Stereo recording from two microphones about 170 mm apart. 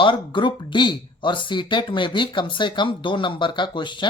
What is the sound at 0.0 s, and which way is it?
Speech, 30° left (ahead or behind).